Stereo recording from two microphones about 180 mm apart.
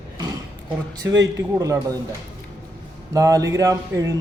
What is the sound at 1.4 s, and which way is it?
Speech, 20° right (ahead or behind).